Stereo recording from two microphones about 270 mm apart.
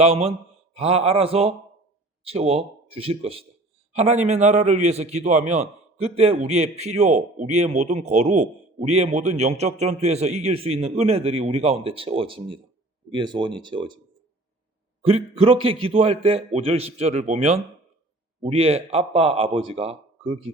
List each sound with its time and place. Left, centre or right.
0.0 s a man's voice: right
15.0 s a man's voice: right